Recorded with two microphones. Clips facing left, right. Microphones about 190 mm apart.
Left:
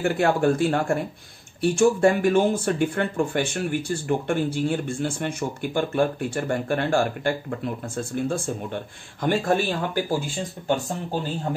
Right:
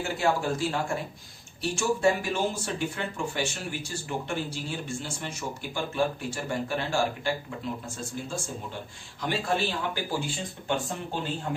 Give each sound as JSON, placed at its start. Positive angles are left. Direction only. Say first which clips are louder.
{"t": 0.0, "sound": "speech", "louder": "left 7 dB", "side_deg": 55}